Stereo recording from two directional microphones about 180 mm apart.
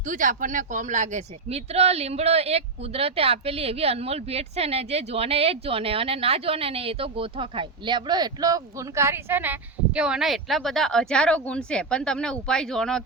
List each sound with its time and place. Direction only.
0.0 s speech: 45° right (ahead or behind); by 13.0 s 5° left (ahead or behind)